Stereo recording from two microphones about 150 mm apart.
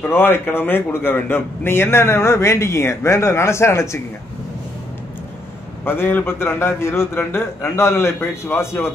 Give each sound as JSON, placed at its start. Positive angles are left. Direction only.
{"t": 0.0, "sound": "a man's voice", "side_deg": 15}
{"t": 5.9, "sound": "a man's voice", "side_deg": 15}